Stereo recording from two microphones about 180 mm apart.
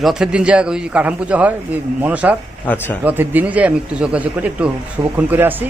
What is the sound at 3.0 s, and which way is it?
Speech, 10° right (ahead or behind).